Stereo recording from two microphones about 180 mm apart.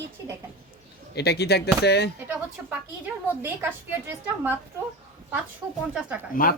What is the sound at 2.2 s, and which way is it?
A woman's voice, 10° right (ahead or behind).